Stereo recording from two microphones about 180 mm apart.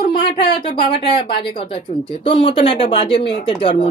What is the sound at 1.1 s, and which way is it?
Speech, 30° left (ahead or behind).